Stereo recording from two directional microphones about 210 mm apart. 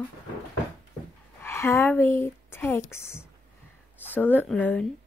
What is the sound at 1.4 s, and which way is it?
A woman's voice, 10° left (ahead or behind).